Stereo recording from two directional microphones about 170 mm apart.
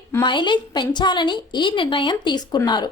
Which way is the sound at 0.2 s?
25° left (ahead or behind).